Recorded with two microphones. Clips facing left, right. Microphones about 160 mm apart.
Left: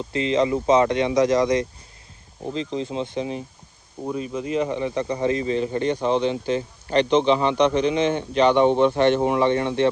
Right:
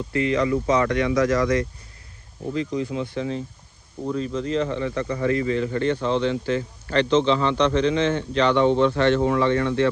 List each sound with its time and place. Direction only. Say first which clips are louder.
0.0 s speech: left 1 dB; 20° left (ahead or behind)